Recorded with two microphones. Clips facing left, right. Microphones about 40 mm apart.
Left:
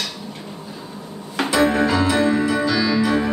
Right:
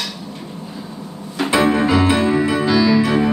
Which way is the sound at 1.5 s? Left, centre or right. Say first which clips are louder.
Right 2 dB; right.